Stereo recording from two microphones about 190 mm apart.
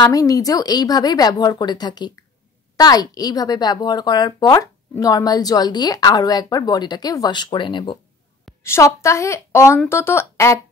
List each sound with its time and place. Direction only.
0.0 s a woman's voice: 20° left (ahead or behind)
8.6 s a woman's voice: 15° left (ahead or behind)